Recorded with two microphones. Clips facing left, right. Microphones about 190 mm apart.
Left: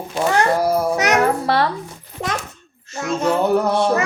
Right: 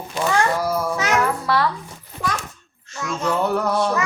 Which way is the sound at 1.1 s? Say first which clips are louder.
Left 3 dB; 40° left (ahead or behind).